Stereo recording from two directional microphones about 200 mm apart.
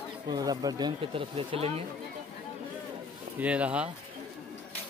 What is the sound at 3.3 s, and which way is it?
Speech, 5° right (ahead or behind).